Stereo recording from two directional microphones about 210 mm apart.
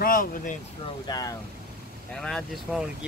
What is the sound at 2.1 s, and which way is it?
Speech, centre (ahead or behind).